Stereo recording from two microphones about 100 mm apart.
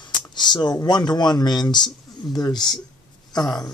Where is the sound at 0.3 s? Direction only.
50° left (ahead or behind).